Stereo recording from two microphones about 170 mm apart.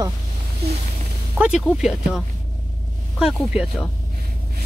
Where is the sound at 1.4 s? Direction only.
5° right (ahead or behind).